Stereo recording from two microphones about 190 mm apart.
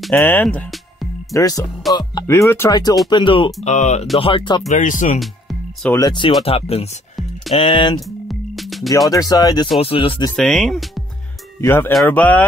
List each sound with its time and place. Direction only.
0.2 s speech: 10° left (ahead or behind)
1.3 s speech: 20° left (ahead or behind)
1.6 s speech: centre (ahead or behind)
2.0 s speech: 20° left (ahead or behind)
3.6 s speech: 40° left (ahead or behind)
4.6 s speech: 40° left (ahead or behind)
5.2 s music: centre (ahead or behind)
5.9 s speech: 20° left (ahead or behind)
8.3 s music: centre (ahead or behind)
9.1 s speech: 20° left (ahead or behind)
10.3 s speech: centre (ahead or behind)
11.6 s speech: 15° left (ahead or behind)